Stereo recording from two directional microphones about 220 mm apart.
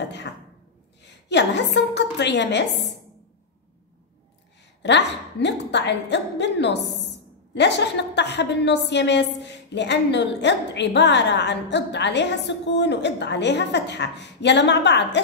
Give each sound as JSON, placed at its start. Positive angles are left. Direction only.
{"t": 1.0, "sound": "a woman's voice", "side_deg": 50}
{"t": 4.8, "sound": "a woman's voice", "side_deg": 50}